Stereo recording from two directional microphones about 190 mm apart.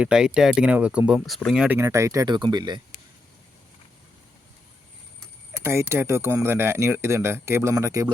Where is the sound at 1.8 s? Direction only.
15° right (ahead or behind).